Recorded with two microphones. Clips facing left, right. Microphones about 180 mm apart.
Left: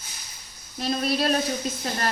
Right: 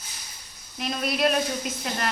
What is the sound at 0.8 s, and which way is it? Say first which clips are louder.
Speech: left 1 dB; 35° left (ahead or behind).